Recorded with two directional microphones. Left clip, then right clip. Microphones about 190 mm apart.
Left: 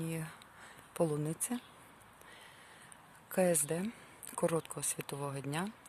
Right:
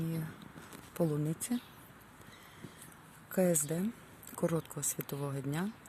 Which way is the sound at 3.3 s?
25° left (ahead or behind).